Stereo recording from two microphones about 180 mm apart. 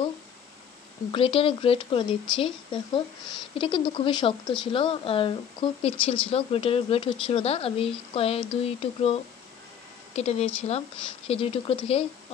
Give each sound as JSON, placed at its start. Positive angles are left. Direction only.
{"t": 1.1, "sound": "speech", "side_deg": 30}